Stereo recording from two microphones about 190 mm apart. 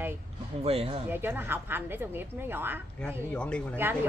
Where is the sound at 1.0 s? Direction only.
10° right (ahead or behind).